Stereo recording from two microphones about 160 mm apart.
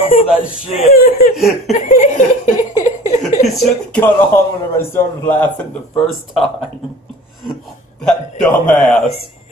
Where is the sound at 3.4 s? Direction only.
Centre (ahead or behind).